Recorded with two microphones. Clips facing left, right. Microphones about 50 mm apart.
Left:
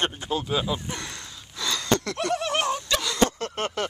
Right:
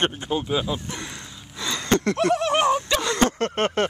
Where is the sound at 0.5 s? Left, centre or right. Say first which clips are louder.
Right 1 dB; centre.